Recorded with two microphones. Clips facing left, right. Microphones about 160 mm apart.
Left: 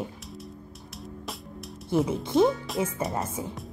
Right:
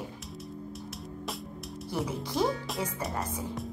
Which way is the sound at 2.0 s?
20° left (ahead or behind).